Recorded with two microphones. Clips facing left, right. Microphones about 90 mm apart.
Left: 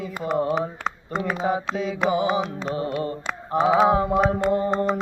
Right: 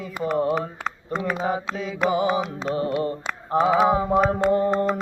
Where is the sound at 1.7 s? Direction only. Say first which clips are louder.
Left 1 dB; centre (ahead or behind).